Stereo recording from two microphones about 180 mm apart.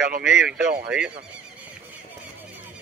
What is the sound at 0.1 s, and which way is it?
Speech, 75° right (ahead or behind).